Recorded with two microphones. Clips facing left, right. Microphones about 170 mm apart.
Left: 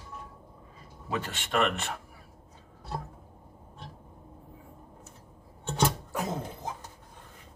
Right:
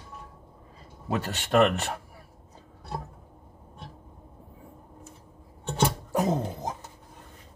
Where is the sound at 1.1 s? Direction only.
40° right (ahead or behind).